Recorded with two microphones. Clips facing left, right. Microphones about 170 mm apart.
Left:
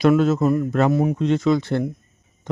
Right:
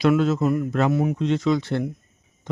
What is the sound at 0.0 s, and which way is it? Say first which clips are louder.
A man's voice: left 3 dB; 50° left (ahead or behind).